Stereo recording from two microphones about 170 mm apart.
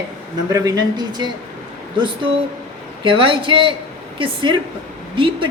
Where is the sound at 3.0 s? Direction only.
30° right (ahead or behind).